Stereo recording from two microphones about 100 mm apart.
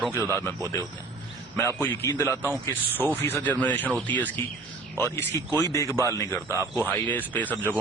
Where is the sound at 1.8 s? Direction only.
25° left (ahead or behind).